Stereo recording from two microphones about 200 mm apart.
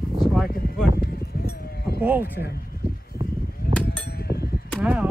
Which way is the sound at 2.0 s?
10° right (ahead or behind).